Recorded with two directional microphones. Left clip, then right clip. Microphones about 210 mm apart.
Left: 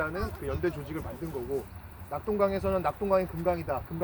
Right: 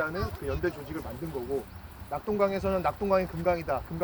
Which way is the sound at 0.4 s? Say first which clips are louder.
Even; 5° right (ahead or behind).